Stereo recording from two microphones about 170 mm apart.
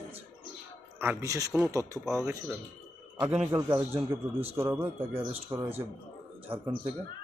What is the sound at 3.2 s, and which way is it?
Speech, 5° right (ahead or behind).